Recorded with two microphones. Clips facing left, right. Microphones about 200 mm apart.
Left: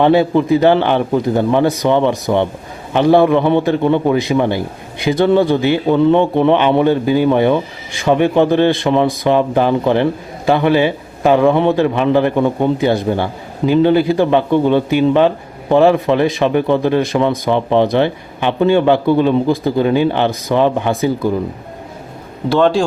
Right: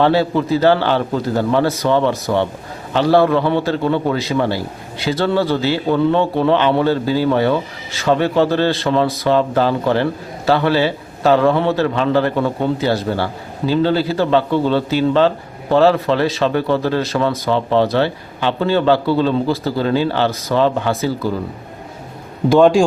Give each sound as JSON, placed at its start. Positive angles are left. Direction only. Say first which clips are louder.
{"t": 0.0, "sound": "a man's voice", "louder": "left 3 dB", "side_deg": 15}
{"t": 22.4, "sound": "a man's voice", "louder": "right 2 dB", "side_deg": -15}